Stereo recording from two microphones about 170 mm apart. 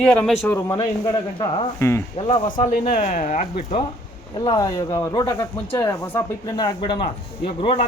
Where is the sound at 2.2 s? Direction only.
30° left (ahead or behind).